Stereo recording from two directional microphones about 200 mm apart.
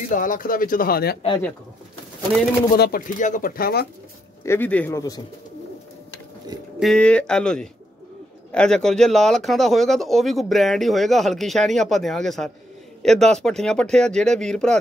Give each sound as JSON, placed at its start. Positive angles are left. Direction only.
{"t": 0.1, "sound": "speech", "side_deg": 40}
{"t": 2.7, "sound": "speech", "side_deg": 45}
{"t": 4.5, "sound": "speech", "side_deg": 10}
{"t": 6.8, "sound": "speech", "side_deg": 5}